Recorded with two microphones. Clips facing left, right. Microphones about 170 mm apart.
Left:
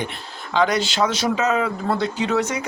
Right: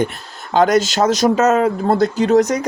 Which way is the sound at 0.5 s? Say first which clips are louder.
Right 6 dB; 45° right (ahead or behind).